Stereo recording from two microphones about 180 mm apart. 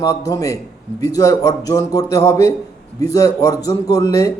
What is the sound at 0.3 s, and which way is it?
A man's voice, 20° left (ahead or behind).